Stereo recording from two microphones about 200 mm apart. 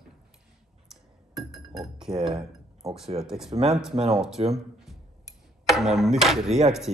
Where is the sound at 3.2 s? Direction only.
Centre (ahead or behind).